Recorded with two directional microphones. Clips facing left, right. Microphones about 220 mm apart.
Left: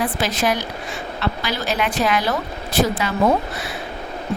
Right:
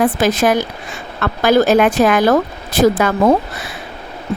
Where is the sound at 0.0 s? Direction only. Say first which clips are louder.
Right 7 dB; 45° right (ahead or behind).